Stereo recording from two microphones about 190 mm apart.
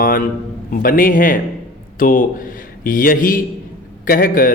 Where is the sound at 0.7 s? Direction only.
50° left (ahead or behind).